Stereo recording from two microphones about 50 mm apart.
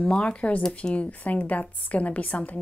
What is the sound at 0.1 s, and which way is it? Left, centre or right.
A woman's voice, left.